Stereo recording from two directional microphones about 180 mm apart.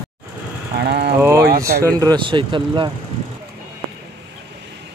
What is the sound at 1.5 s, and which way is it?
Speech, 55° right (ahead or behind).